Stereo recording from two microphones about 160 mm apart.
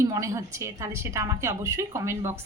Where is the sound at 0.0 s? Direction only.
20° right (ahead or behind).